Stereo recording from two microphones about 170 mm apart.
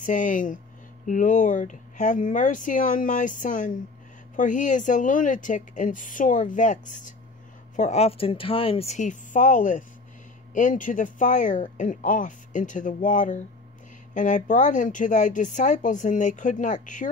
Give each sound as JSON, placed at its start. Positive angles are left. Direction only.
{"t": 0.0, "sound": "a woman's voice", "side_deg": 50}